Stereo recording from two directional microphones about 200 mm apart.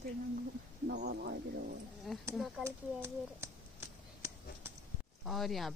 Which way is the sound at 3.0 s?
15° right (ahead or behind).